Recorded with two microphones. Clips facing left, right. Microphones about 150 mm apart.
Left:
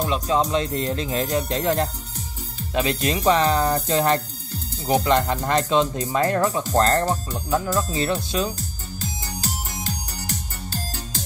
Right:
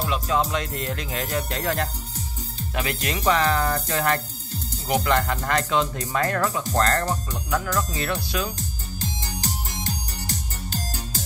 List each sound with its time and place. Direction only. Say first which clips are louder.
0.0 s music: left 2 dB; 25° left (ahead or behind)
4.8 s speech: left 3 dB; 30° left (ahead or behind)
5.1 s music: left 3 dB; 20° left (ahead or behind)
6.7 s speech: left 4 dB; 35° left (ahead or behind)
7.1 s music: left 3 dB; 20° left (ahead or behind)